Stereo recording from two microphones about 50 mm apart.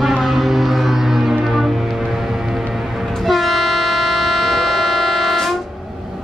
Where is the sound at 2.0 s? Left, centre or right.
Centre.